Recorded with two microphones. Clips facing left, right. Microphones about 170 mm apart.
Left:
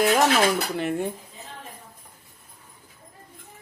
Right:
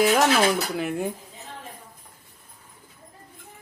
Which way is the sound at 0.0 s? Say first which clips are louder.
Even; centre (ahead or behind).